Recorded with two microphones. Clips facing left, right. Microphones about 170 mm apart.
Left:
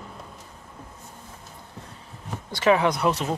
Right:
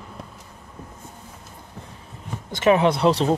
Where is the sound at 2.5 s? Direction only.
20° right (ahead or behind).